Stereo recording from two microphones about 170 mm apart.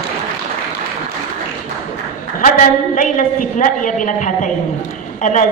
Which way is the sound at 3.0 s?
50° left (ahead or behind).